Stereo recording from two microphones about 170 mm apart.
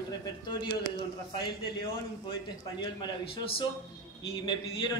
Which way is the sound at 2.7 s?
30° left (ahead or behind).